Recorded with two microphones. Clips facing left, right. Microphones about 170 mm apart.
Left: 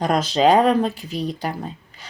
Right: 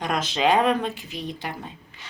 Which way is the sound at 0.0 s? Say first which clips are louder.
Left 6 dB; 35° left (ahead or behind).